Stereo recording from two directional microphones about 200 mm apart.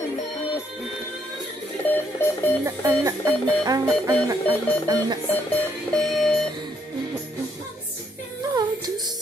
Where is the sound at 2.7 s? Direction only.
15° right (ahead or behind).